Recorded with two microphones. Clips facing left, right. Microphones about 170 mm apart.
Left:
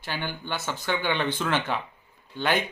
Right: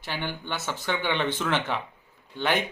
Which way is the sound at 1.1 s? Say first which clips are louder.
Even; 20° right (ahead or behind).